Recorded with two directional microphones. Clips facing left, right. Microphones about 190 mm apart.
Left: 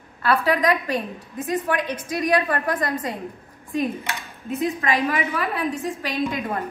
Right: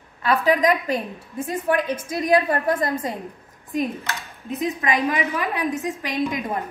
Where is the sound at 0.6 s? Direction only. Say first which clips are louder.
Right 1 dB; 20° right (ahead or behind).